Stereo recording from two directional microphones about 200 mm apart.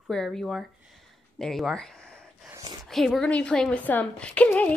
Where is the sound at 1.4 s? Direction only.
Centre (ahead or behind).